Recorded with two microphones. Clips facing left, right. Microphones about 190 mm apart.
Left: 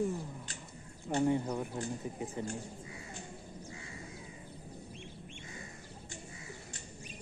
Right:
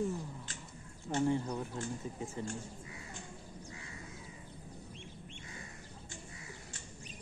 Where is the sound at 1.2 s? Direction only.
20° left (ahead or behind).